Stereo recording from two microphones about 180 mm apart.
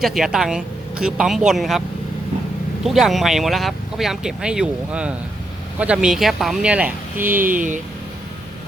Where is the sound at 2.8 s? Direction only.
Centre (ahead or behind).